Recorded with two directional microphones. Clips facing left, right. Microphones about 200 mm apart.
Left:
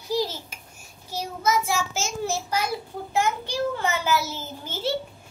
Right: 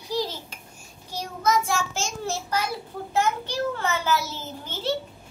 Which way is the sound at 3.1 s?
10° left (ahead or behind).